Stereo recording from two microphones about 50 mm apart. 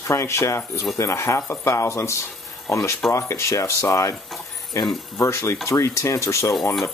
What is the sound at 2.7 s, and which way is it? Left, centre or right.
Speech, left.